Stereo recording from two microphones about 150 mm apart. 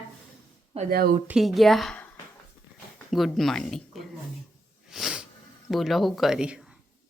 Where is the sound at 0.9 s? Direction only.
90° right.